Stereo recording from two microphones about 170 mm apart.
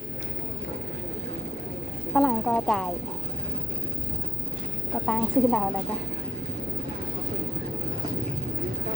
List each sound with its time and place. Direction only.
2.1 s speech: centre (ahead or behind)
5.0 s speech: 5° left (ahead or behind)